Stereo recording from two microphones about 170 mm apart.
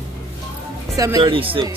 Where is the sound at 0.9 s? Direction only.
20° right (ahead or behind).